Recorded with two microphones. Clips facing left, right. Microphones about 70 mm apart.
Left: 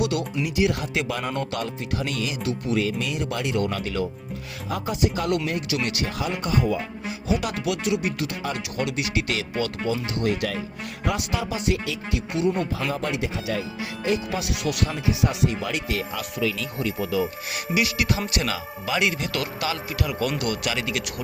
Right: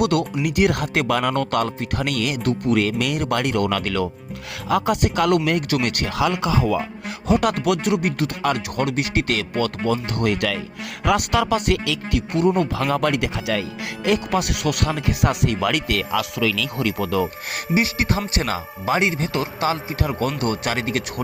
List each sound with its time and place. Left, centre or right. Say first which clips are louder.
0.0 s speech: right 5 dB; right
5.8 s speech: right 3 dB; right
6.1 s speech: right 7 dB; right
7.3 s speech: right 7 dB; right
8.9 s speech: right 4 dB; right
17.7 s a man's voice: right 3 dB; right